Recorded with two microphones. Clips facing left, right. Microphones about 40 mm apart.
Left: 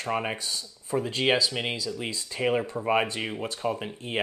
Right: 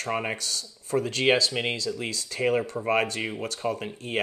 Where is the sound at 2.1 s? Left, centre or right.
Left.